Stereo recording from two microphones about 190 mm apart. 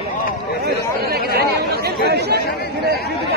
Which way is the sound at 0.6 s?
55° right (ahead or behind).